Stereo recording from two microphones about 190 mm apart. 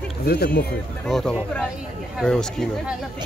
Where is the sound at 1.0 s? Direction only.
Centre (ahead or behind).